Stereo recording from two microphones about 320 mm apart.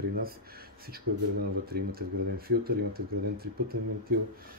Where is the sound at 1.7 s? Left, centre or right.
Right.